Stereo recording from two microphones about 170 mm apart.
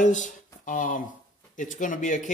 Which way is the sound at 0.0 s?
45° left (ahead or behind).